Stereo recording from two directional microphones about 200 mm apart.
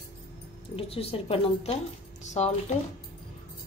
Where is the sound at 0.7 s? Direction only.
30° left (ahead or behind).